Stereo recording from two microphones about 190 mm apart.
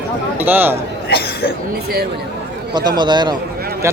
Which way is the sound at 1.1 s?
55° left (ahead or behind).